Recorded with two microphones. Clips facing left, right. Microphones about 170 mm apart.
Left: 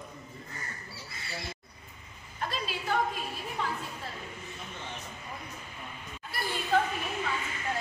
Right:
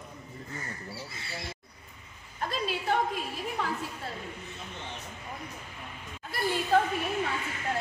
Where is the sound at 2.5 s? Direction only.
55° right (ahead or behind).